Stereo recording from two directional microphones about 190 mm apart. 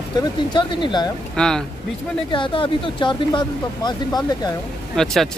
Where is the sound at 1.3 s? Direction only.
5° left (ahead or behind).